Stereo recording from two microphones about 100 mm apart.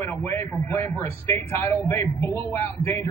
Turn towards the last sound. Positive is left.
turn(degrees=25)  # may be behind; listen again after turning